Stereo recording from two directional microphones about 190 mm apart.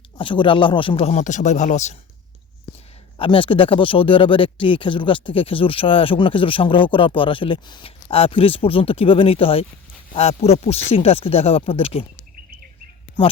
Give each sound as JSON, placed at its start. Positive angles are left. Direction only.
{"t": 0.2, "sound": "speech", "side_deg": 25}
{"t": 3.2, "sound": "speech", "side_deg": 25}